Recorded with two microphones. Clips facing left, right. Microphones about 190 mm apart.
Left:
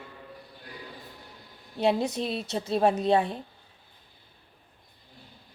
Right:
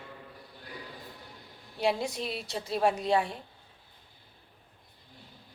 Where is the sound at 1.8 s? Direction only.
20° left (ahead or behind).